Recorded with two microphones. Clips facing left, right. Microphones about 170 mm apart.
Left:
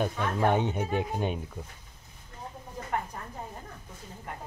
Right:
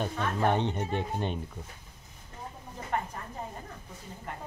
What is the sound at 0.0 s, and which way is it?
A man's voice, 10° left (ahead or behind).